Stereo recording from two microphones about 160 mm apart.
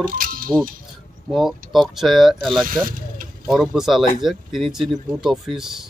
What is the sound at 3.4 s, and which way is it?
Speech, centre (ahead or behind).